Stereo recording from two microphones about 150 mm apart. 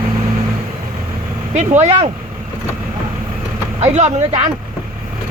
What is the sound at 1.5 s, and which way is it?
Speech, 50° right (ahead or behind).